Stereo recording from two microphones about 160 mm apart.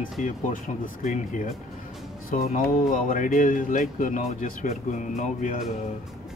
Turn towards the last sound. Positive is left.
turn(degrees=50)  # may be behind; listen again after turning